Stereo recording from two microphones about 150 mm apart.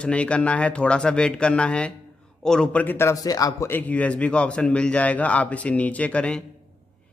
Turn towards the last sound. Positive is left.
turn(degrees=5)  # may be behind; listen again after turning